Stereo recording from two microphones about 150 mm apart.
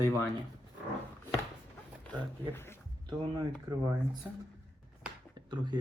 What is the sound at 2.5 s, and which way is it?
Speech, 15° left (ahead or behind).